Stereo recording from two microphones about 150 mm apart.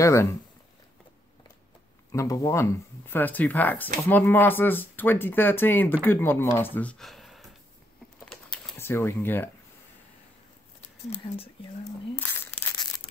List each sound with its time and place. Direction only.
0.0 s speech: 20° left (ahead or behind)
2.1 s speech: 20° left (ahead or behind); by 7.4 s centre (ahead or behind)
8.7 s speech: 15° left (ahead or behind)
12.2 s crumpling: 15° left (ahead or behind)